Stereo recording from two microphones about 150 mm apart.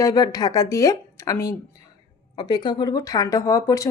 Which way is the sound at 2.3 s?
30° left (ahead or behind).